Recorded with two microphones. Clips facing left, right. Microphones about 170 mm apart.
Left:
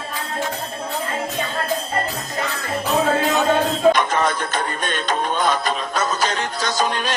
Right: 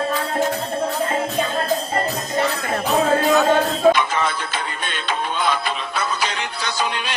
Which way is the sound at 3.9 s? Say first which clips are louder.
Left 2 dB; 45° left (ahead or behind).